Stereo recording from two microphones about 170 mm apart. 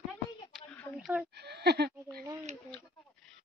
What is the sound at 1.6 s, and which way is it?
Speech, 70° right (ahead or behind).